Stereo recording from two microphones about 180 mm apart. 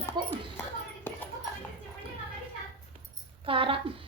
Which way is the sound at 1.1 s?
10° left (ahead or behind).